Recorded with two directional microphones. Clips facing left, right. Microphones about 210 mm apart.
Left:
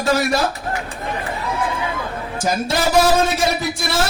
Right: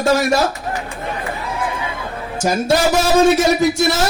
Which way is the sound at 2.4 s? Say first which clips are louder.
Right 4 dB; 50° right (ahead or behind).